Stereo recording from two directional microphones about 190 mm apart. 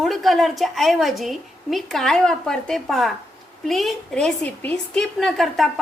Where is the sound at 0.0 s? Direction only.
Centre (ahead or behind).